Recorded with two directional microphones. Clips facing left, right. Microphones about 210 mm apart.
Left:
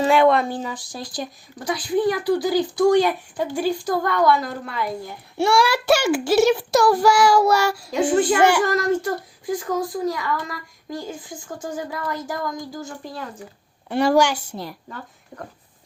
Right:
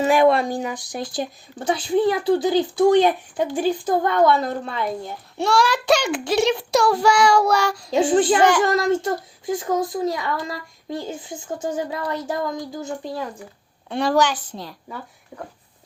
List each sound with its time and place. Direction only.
0.0 s speech: 15° right (ahead or behind)
5.4 s a child's voice: 10° left (ahead or behind)
8.6 s speech: 25° right (ahead or behind)
13.9 s a woman's voice: 10° left (ahead or behind)